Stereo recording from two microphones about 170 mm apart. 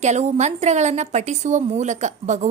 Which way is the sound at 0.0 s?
40° right (ahead or behind).